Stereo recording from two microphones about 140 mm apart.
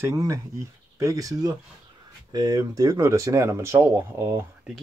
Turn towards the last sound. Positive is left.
turn(degrees=-20)  # may be behind; listen again after turning